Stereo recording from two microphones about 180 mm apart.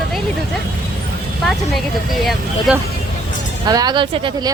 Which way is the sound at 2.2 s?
5° right (ahead or behind).